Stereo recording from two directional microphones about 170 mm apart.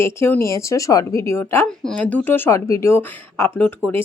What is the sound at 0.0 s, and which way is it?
Speech, 15° left (ahead or behind).